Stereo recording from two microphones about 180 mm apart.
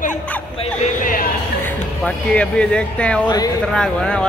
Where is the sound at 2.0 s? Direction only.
5° left (ahead or behind).